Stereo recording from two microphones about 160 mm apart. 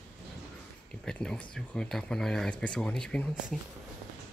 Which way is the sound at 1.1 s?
5° left (ahead or behind).